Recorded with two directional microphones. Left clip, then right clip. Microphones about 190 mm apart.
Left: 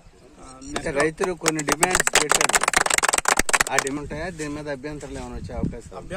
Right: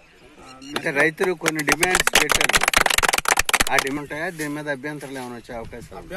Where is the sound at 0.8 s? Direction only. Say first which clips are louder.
Right 3 dB; 40° right (ahead or behind).